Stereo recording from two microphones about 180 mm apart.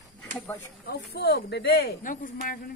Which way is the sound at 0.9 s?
65° left (ahead or behind).